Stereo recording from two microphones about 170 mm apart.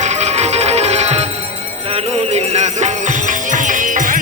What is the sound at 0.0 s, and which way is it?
Music, 40° right (ahead or behind).